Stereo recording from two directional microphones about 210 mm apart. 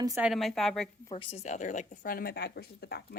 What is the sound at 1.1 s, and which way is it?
A woman's voice, 30° left (ahead or behind).